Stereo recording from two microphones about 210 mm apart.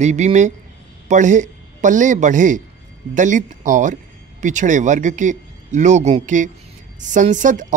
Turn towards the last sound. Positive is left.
turn(degrees=-35)  # may be behind; listen again after turning